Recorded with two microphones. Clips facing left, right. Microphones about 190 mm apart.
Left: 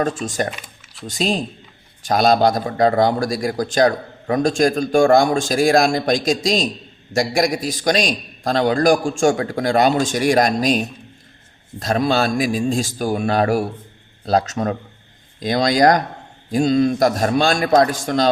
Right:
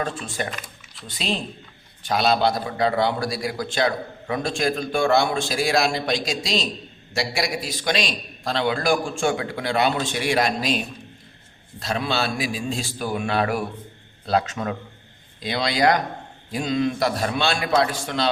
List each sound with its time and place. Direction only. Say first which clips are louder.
0.1 s speech: left 7 dB; 90° left
1.0 s a man's voice: left 6 dB; 45° left (ahead or behind)